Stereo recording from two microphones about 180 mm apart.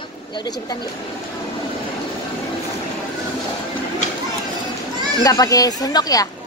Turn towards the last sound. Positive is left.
turn(degrees=20)  # may be behind; listen again after turning